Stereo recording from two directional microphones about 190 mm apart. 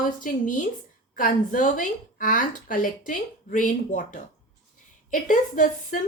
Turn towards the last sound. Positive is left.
turn(degrees=45)  # may be behind; listen again after turning